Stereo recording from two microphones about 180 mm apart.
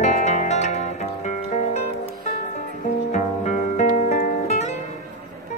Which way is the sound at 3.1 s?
40° left (ahead or behind).